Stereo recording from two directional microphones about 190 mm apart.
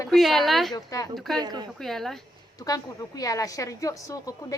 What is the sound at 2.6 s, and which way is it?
A woman's voice, 20° left (ahead or behind).